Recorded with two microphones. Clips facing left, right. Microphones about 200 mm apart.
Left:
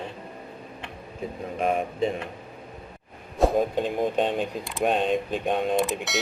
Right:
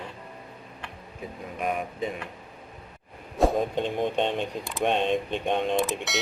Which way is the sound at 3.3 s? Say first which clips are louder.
Left 2 dB; centre (ahead or behind).